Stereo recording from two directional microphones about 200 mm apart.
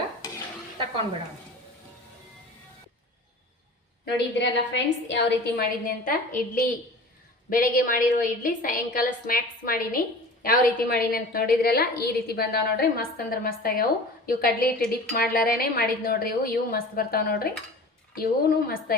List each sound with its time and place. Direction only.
4.0 s a woman's voice: 60° left (ahead or behind)